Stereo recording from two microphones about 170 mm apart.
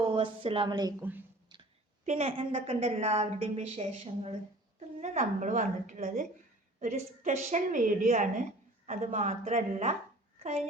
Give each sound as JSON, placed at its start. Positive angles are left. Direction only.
{"t": 0.1, "sound": "a woman's voice", "side_deg": -30}
{"t": 1.5, "sound": "a sound", "side_deg": -25}
{"t": 2.0, "sound": "a woman's voice", "side_deg": -35}